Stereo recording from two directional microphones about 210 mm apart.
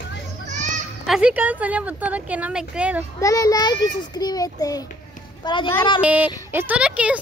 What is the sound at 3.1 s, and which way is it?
A child's voice, 15° left (ahead or behind).